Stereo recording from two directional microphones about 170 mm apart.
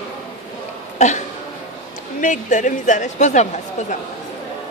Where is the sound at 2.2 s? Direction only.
45° left (ahead or behind).